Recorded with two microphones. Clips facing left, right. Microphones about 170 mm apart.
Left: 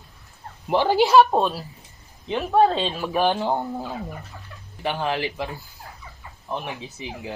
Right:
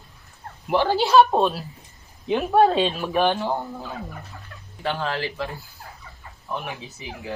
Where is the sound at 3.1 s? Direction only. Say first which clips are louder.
Left 2 dB; 15° left (ahead or behind).